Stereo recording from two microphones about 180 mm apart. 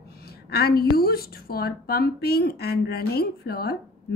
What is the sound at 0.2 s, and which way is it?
A woman's voice, 60° left (ahead or behind).